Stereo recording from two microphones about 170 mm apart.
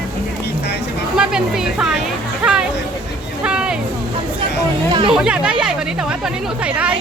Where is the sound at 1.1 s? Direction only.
5° right (ahead or behind).